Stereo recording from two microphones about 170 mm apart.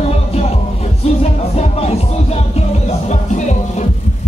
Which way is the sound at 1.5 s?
35° left (ahead or behind).